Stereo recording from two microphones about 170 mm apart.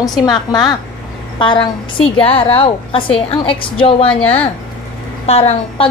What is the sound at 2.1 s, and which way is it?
A woman's voice, 35° left (ahead or behind).